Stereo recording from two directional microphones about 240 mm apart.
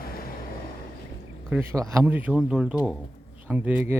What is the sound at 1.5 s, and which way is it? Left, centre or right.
Speech, centre.